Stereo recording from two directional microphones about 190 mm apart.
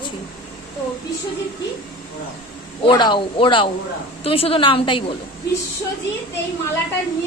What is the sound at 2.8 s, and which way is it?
A woman's voice, 25° left (ahead or behind).